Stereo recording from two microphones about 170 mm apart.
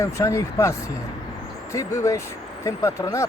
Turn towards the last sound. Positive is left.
turn(degrees=20)  # may be behind; listen again after turning